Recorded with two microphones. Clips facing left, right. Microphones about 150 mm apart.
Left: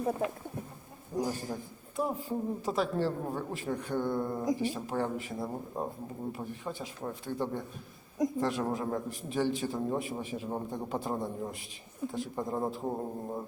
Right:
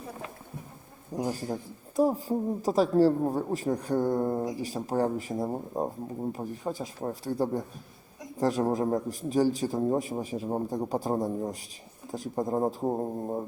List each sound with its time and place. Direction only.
1.3 s a woman's voice: 35° right (ahead or behind)
12.8 s a man's voice: 30° right (ahead or behind)